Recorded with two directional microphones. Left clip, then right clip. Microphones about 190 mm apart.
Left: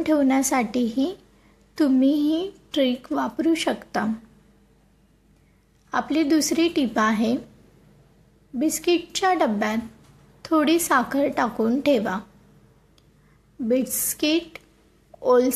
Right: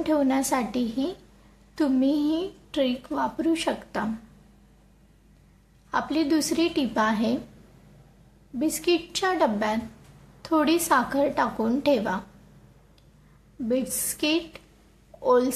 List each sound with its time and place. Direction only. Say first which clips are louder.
0.0 s a woman's voice: left 3 dB; 20° left (ahead or behind)
5.9 s a woman's voice: left 3 dB; 20° left (ahead or behind)
8.5 s a woman's voice: left 2 dB; 20° left (ahead or behind)
13.7 s a woman's voice: left 4 dB; 20° left (ahead or behind)